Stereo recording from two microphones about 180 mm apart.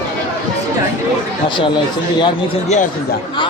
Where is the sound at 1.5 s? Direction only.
25° left (ahead or behind).